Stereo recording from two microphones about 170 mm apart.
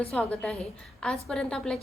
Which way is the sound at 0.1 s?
5° left (ahead or behind).